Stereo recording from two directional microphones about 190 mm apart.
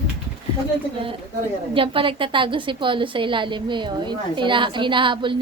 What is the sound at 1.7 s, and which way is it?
A woman's voice, 25° right (ahead or behind).